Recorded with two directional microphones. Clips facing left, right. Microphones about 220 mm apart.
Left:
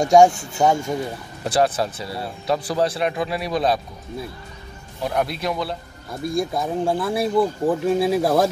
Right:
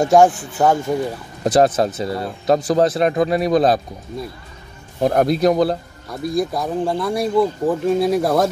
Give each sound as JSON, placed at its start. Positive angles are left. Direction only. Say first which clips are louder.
{"t": 0.6, "sound": "speech", "louder": "right 2 dB", "side_deg": 0}
{"t": 1.4, "sound": "speech", "louder": "right 5 dB", "side_deg": -40}
{"t": 5.0, "sound": "speech", "louder": "right 8 dB", "side_deg": -45}
{"t": 6.2, "sound": "speech", "louder": "right 2 dB", "side_deg": 0}